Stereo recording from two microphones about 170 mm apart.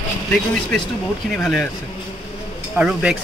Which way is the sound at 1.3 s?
Centre (ahead or behind).